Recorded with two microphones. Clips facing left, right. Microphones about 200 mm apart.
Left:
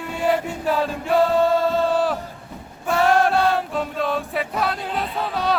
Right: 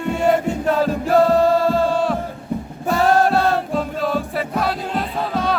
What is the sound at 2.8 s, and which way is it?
Music, 35° right (ahead or behind).